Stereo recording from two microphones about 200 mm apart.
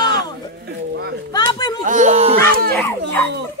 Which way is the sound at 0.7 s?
55° right (ahead or behind).